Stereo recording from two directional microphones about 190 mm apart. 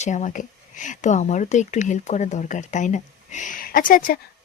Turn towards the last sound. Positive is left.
turn(degrees=50)  # may be behind; listen again after turning